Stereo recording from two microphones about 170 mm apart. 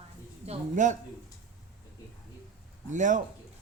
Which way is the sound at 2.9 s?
45° right (ahead or behind).